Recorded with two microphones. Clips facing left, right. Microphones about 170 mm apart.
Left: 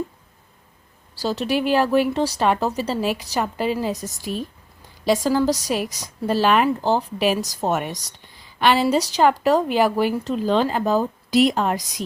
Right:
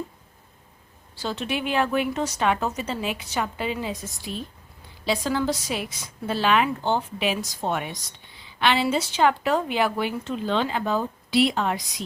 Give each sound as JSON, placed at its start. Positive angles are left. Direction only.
{"t": 1.1, "sound": "a woman's voice", "side_deg": 40}